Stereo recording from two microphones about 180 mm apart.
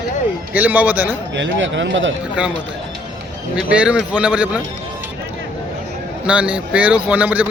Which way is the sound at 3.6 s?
5° right (ahead or behind).